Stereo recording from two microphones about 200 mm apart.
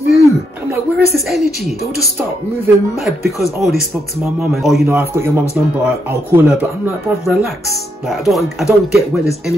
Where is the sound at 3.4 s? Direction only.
Centre (ahead or behind).